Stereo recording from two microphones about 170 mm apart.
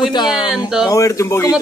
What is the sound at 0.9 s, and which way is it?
Speech, 20° left (ahead or behind).